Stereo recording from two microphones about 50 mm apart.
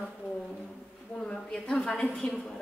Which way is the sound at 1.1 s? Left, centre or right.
Left.